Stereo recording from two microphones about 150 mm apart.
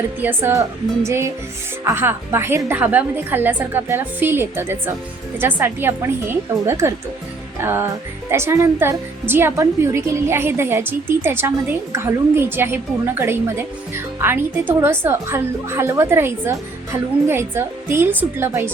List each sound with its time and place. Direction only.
0.2 s a woman's voice: 15° right (ahead or behind)
1.0 s music: 20° right (ahead or behind)
1.8 s a woman's voice: 15° right (ahead or behind)